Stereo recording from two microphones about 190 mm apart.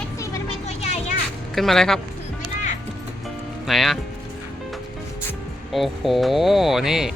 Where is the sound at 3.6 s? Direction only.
Centre (ahead or behind).